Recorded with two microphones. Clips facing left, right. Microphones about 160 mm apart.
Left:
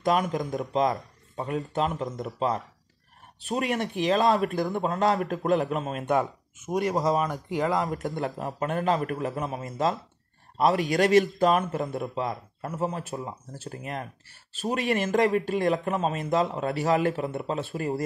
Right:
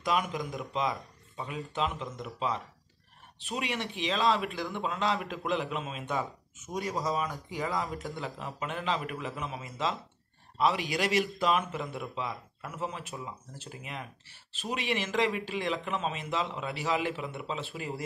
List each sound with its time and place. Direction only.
0.0 s a man's voice: 45° left (ahead or behind)